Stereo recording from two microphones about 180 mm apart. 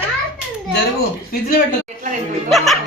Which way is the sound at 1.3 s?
55° left (ahead or behind).